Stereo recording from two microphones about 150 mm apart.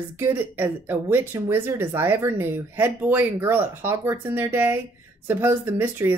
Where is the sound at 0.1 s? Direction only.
15° right (ahead or behind).